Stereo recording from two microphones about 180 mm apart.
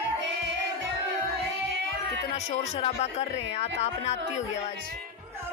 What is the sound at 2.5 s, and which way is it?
Speech, 35° left (ahead or behind).